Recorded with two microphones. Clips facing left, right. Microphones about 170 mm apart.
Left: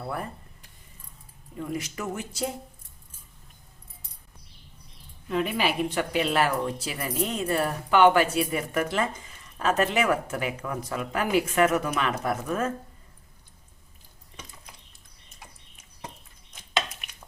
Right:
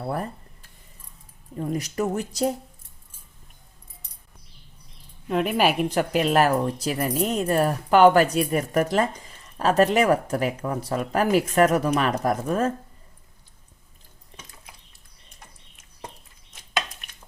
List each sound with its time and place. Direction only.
0.0 s speech: 35° right (ahead or behind)
1.5 s speech: 35° right (ahead or behind)
5.3 s speech: 50° right (ahead or behind); by 12.7 s 35° right (ahead or behind)
16.5 s a sound: 5° left (ahead or behind)